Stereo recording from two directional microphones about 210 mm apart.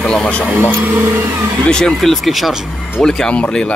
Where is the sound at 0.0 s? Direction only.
5° left (ahead or behind).